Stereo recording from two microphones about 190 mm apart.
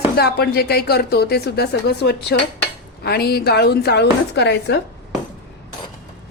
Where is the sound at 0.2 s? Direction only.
55° left (ahead or behind).